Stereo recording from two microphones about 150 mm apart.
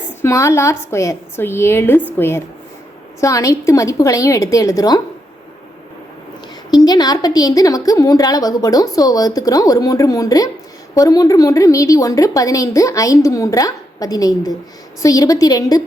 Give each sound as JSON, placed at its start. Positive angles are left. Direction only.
{"t": 0.2, "sound": "a woman's voice", "side_deg": 20}
{"t": 6.7, "sound": "a woman's voice", "side_deg": 25}